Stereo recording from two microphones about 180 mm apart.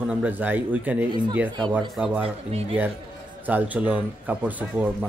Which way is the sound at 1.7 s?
5° right (ahead or behind).